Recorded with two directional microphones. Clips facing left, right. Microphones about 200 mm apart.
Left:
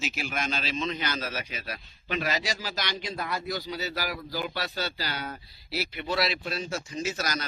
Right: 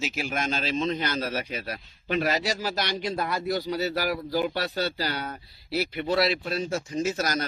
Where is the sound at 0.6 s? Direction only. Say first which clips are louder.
Right 4 dB; 45° right (ahead or behind).